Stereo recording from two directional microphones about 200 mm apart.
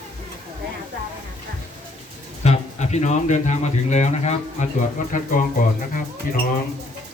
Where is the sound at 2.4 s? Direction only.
35° left (ahead or behind).